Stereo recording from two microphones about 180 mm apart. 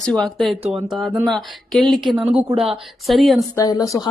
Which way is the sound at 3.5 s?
20° left (ahead or behind).